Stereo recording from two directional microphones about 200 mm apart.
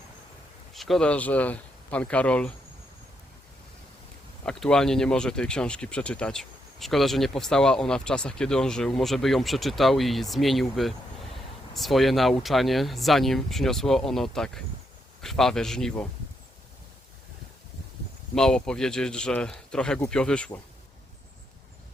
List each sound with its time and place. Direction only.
0.7 s speech: centre (ahead or behind)
4.4 s speech: 5° left (ahead or behind)
18.3 s speech: 5° left (ahead or behind)